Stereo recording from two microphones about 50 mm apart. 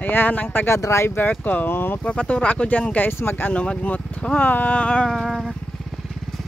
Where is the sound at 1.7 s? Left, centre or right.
Left.